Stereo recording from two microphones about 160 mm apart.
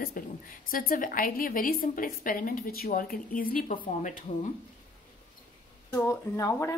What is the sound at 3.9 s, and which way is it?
Speech, 50° left (ahead or behind).